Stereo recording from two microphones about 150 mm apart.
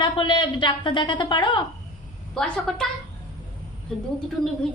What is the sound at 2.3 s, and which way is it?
Speech, 5° left (ahead or behind).